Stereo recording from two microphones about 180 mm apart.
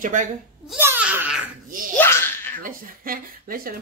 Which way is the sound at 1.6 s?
50° right (ahead or behind).